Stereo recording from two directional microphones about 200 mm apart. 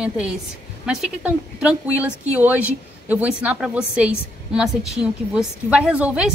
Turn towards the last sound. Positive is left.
turn(degrees=-5)  # may be behind; listen again after turning